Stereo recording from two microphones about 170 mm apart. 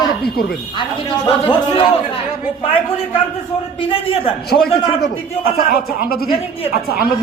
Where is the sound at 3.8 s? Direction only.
30° left (ahead or behind).